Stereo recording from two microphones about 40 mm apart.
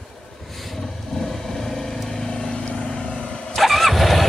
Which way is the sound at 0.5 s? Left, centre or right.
Centre.